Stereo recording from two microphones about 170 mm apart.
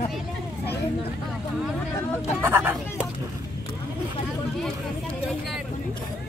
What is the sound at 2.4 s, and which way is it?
Speech, 15° right (ahead or behind).